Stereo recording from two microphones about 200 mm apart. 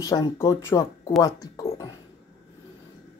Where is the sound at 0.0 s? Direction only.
15° left (ahead or behind).